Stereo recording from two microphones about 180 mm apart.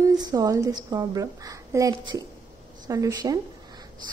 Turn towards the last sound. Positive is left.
turn(degrees=-20)  # may be behind; listen again after turning